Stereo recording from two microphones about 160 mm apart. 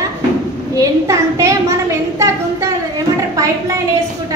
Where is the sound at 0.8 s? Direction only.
20° right (ahead or behind).